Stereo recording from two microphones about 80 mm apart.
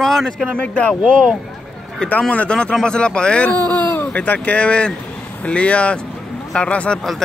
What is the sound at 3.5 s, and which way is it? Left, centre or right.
Speech, left.